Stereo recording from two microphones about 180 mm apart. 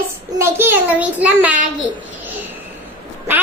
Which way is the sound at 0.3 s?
15° right (ahead or behind).